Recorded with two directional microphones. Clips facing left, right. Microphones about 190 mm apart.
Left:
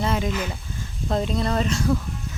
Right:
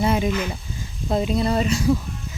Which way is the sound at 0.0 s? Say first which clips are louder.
Right 4 dB; 15° right (ahead or behind).